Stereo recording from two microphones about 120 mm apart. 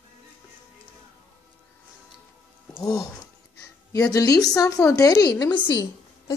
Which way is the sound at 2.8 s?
30° left (ahead or behind).